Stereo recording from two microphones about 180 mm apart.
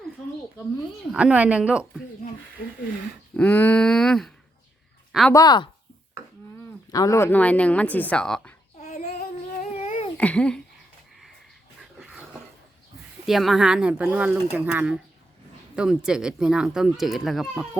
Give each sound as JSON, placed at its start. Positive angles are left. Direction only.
{"t": 1.1, "sound": "speech", "side_deg": -5}
{"t": 3.3, "sound": "speech", "side_deg": 10}
{"t": 5.3, "sound": "speech", "side_deg": 20}
{"t": 6.9, "sound": "speech", "side_deg": 20}
{"t": 8.8, "sound": "child singing", "side_deg": 40}
{"t": 10.2, "sound": "speech", "side_deg": 5}
{"t": 11.8, "sound": "a sound", "side_deg": -5}
{"t": 13.2, "sound": "speech", "side_deg": 0}